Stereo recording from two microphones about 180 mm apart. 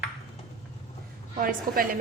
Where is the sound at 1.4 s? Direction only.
50° right (ahead or behind).